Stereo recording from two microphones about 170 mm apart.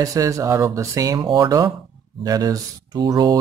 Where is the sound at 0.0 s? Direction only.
20° right (ahead or behind).